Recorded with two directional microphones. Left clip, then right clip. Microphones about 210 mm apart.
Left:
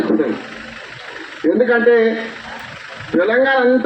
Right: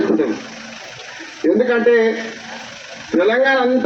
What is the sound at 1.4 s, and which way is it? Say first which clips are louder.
Speech: even; 50° right (ahead or behind).